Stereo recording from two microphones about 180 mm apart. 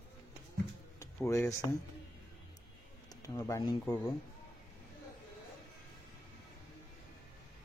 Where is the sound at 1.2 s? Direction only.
15° left (ahead or behind).